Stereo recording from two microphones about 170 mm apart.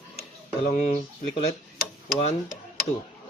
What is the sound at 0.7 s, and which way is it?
Speech, 45° left (ahead or behind).